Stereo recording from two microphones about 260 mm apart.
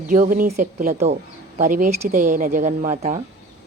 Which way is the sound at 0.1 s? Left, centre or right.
Right.